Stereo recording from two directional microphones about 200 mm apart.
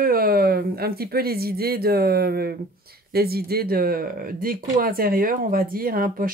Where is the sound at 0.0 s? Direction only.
50° right (ahead or behind).